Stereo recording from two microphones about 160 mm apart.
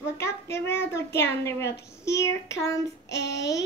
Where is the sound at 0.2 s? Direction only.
15° left (ahead or behind).